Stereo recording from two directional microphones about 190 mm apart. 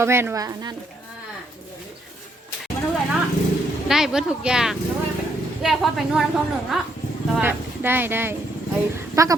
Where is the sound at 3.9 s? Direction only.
Centre (ahead or behind).